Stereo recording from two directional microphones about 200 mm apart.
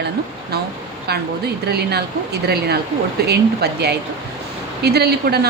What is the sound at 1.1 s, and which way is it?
A woman's voice, 55° right (ahead or behind).